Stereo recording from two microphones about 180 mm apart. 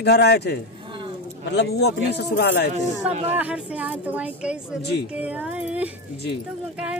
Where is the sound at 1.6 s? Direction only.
70° left (ahead or behind).